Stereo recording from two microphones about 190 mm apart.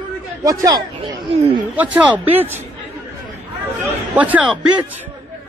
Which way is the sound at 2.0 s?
10° right (ahead or behind).